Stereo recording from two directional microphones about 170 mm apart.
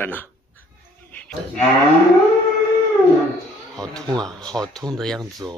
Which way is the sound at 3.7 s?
5° left (ahead or behind).